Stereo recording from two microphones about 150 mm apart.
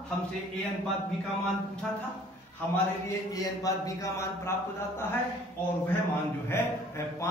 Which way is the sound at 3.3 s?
20° left (ahead or behind).